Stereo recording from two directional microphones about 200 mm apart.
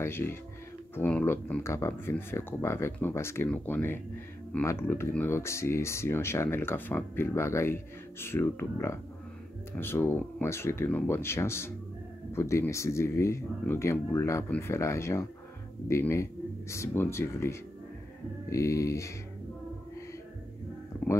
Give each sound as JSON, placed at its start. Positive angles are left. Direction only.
{"t": 0.0, "sound": "speech", "side_deg": 10}